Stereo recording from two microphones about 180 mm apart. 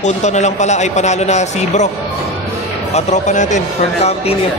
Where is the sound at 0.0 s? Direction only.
40° left (ahead or behind).